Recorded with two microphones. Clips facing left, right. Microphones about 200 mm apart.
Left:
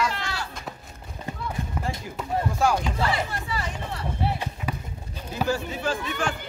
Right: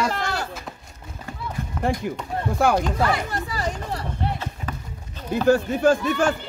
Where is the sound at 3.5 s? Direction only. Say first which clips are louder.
Right 4 dB; 40° right (ahead or behind).